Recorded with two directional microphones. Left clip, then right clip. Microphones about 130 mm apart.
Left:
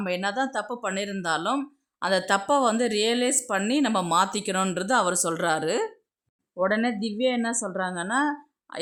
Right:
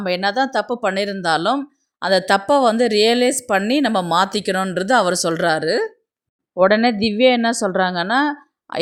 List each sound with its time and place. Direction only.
0.0 s a woman's voice: 35° right (ahead or behind)
6.6 s a woman's voice: 50° right (ahead or behind)